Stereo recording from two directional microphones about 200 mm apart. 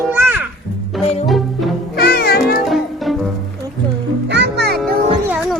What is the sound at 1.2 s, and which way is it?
Music, centre (ahead or behind).